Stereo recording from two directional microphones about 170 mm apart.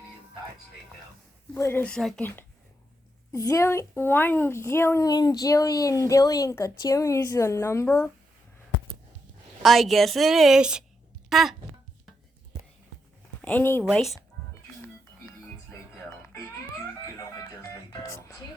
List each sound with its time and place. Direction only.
1.5 s a woman's voice: 15° left (ahead or behind)
3.3 s a woman's voice: 20° left (ahead or behind)
9.6 s a woman's voice: centre (ahead or behind)
13.4 s speech: 10° left (ahead or behind)
13.8 s a woman's voice: centre (ahead or behind)
17.2 s music: 20° left (ahead or behind)